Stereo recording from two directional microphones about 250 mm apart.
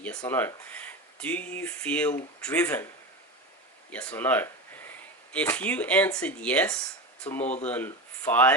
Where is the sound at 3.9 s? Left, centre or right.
Centre.